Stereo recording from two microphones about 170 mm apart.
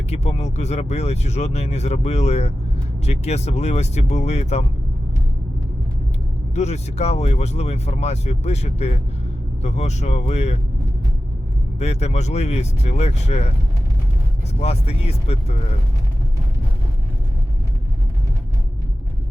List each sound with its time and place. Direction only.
0.1 s speech: 40° left (ahead or behind)
6.5 s speech: 40° left (ahead or behind)
11.8 s speech: 40° left (ahead or behind)
14.6 s speech: 35° left (ahead or behind)